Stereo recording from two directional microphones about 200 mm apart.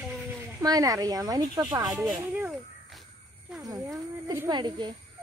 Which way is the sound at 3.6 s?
15° right (ahead or behind).